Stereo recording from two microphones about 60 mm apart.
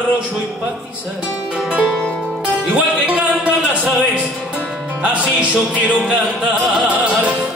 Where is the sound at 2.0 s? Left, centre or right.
Centre.